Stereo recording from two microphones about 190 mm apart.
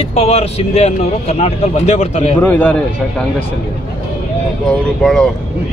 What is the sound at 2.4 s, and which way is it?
Speech, 10° left (ahead or behind).